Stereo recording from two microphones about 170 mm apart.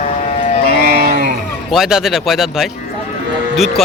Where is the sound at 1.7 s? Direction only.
Centre (ahead or behind).